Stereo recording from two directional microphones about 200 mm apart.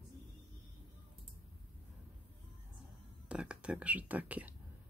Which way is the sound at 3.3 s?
5° right (ahead or behind).